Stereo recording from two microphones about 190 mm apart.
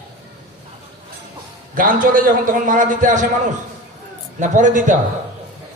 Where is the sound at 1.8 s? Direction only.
45° right (ahead or behind).